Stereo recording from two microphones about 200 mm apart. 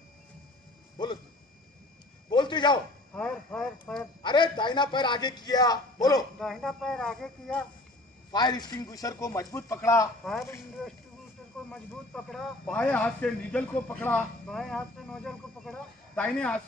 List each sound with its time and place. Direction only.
0.9 s speech: 20° left (ahead or behind)
2.2 s a sound: 20° left (ahead or behind)
3.2 s speech: 5° left (ahead or behind)
4.2 s a man's voice: 25° left (ahead or behind)
6.4 s a man's voice: centre (ahead or behind)
8.3 s speech: 20° left (ahead or behind)
10.2 s a man's voice: centre (ahead or behind)
12.3 s a man's voice: centre (ahead or behind)